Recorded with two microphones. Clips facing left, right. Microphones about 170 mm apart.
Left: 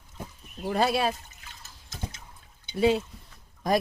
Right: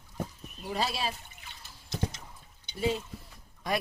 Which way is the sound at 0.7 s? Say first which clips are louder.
Left 7 dB; 55° left (ahead or behind).